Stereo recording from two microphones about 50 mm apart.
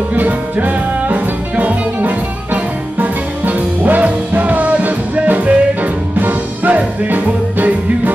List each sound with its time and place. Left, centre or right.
0.1 s music: right